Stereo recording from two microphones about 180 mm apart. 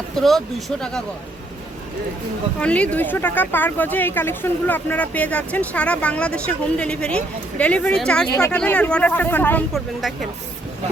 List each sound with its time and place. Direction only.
0.2 s speech: centre (ahead or behind)
2.6 s speech: 5° left (ahead or behind)
8.3 s speech: 15° left (ahead or behind)
9.7 s speech: centre (ahead or behind)